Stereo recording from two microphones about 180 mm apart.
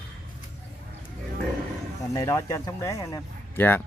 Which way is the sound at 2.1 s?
20° left (ahead or behind).